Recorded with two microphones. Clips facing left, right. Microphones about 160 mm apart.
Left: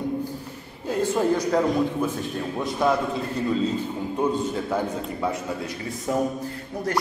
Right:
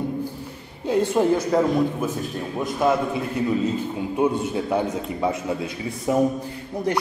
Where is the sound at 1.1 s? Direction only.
5° right (ahead or behind).